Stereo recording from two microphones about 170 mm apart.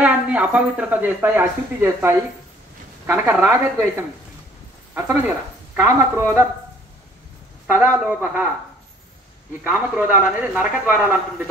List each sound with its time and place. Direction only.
0.0 s speech: 10° right (ahead or behind)
4.9 s speech: 20° right (ahead or behind)
7.6 s speech: 15° right (ahead or behind)
9.6 s speech: 10° right (ahead or behind)